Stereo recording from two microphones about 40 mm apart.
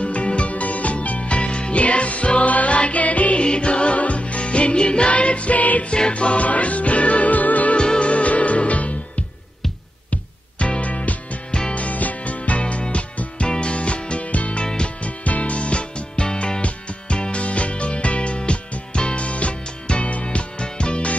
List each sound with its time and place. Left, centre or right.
0.0 s music: left
3.4 s music: left
5.9 s music: left
7.7 s music: left
10.6 s music: left
14.6 s music: left
15.0 s music: left